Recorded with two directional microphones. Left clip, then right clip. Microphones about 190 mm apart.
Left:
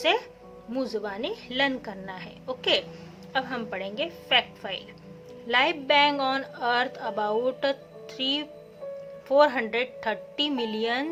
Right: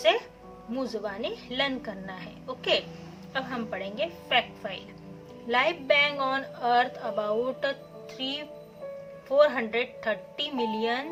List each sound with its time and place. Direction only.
0.7 s a woman's voice: 45° left (ahead or behind)